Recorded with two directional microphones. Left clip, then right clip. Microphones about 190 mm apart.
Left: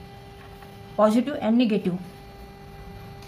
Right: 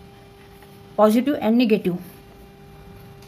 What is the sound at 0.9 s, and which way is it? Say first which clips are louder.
Speech: right 4 dB; 45° right (ahead or behind).